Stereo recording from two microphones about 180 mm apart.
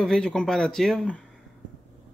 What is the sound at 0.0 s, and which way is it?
Speech, 5° left (ahead or behind).